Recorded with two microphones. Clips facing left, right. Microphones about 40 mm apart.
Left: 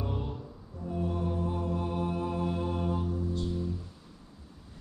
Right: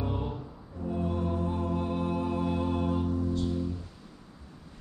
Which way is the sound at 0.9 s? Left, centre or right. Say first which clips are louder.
Right 1 dB; centre.